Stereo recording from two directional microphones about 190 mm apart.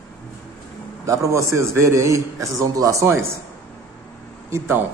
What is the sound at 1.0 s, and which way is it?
A man's voice, 15° right (ahead or behind).